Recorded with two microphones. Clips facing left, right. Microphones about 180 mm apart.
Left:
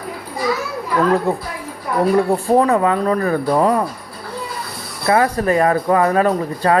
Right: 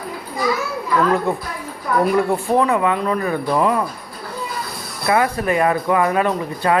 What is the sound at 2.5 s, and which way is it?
Speech, 40° left (ahead or behind).